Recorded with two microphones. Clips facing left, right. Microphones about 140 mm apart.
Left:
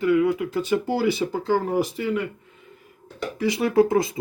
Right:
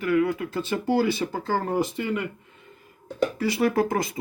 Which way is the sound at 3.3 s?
20° left (ahead or behind).